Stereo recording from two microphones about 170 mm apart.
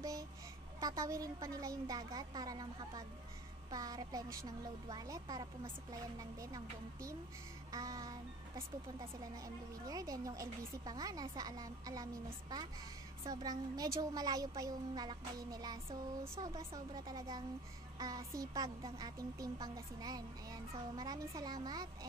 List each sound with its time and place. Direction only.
0.7 s a woman's voice: 20° right (ahead or behind)
9.8 s a woman's voice: 20° right (ahead or behind)